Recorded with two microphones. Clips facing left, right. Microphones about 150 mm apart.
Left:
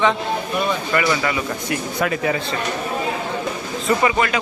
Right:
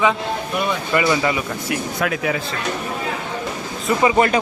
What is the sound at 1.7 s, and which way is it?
Speech, centre (ahead or behind).